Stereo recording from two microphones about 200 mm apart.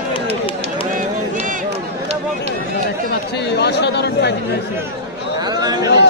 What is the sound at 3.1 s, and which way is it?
Speech, 55° left (ahead or behind).